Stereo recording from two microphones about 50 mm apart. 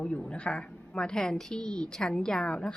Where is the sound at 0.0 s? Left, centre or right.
Left.